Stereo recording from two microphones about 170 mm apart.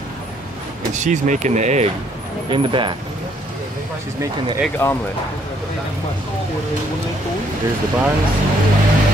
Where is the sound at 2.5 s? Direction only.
30° right (ahead or behind).